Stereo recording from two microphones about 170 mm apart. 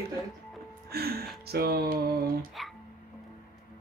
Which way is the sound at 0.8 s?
65° right (ahead or behind).